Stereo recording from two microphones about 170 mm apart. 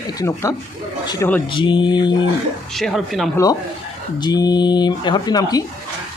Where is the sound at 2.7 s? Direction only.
Centre (ahead or behind).